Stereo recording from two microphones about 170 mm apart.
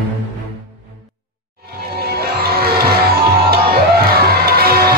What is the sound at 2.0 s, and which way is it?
Music, 65° right (ahead or behind).